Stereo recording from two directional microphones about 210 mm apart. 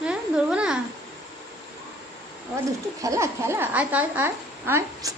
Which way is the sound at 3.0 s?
15° right (ahead or behind).